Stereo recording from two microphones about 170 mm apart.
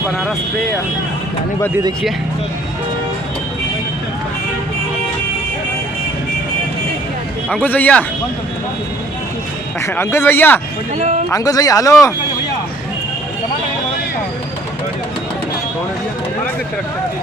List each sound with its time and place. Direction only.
7.5 s speech: 10° left (ahead or behind)
9.8 s speech: 15° left (ahead or behind)